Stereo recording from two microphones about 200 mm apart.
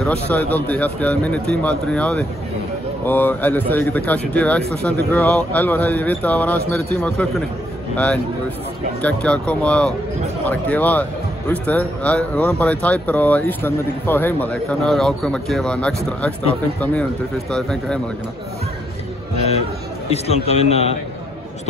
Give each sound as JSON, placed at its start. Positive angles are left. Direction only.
{"t": 0.0, "sound": "a man's voice", "side_deg": 5}
{"t": 17.5, "sound": "speech", "side_deg": 5}
{"t": 20.1, "sound": "a man's voice", "side_deg": 30}